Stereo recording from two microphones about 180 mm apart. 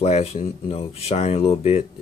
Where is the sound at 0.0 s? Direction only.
35° left (ahead or behind).